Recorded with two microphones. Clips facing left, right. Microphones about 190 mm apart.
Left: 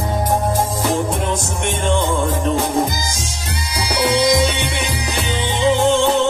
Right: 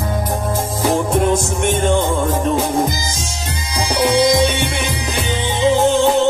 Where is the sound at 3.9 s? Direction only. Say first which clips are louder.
Right 2 dB; 45° right (ahead or behind).